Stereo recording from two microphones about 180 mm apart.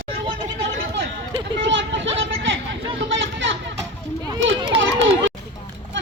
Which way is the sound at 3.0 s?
90° right.